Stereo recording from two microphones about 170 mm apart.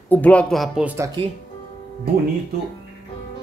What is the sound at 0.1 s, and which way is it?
Speech, 10° left (ahead or behind).